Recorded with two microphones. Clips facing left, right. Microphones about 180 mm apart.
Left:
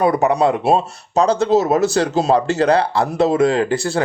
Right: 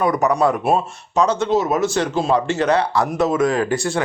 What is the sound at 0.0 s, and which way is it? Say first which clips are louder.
Speech: left 2 dB; 30° left (ahead or behind).